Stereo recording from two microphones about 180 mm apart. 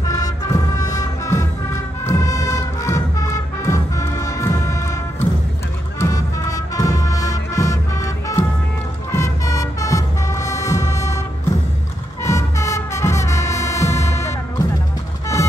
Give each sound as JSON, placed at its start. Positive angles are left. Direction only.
{"t": 0.1, "sound": "music", "side_deg": 20}